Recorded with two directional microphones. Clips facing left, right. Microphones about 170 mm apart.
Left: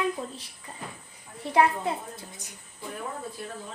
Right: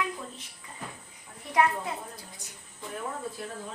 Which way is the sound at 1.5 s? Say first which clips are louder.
Left 3 dB; 30° left (ahead or behind).